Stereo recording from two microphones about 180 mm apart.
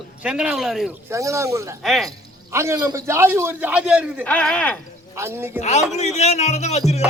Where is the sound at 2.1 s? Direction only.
15° right (ahead or behind).